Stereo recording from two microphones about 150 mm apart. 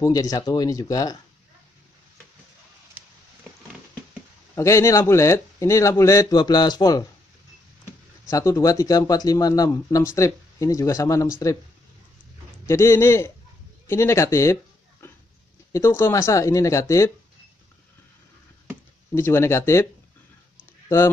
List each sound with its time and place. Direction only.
0.0 s speech: 25° left (ahead or behind)
4.6 s speech: 20° left (ahead or behind)
8.3 s speech: 20° left (ahead or behind)
12.6 s speech: 15° left (ahead or behind)
19.1 s speech: 15° left (ahead or behind)